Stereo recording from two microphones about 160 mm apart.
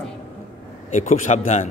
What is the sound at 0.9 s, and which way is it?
Speech, 50° left (ahead or behind).